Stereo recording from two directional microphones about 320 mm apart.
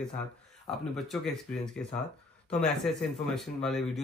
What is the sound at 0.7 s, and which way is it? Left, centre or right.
Speech, centre.